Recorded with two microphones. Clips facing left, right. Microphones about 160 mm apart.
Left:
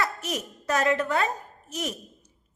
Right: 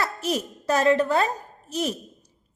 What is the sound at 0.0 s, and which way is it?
A woman's voice, 30° right (ahead or behind).